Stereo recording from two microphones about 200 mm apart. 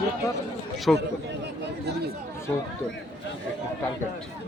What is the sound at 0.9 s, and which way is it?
Speech, centre (ahead or behind).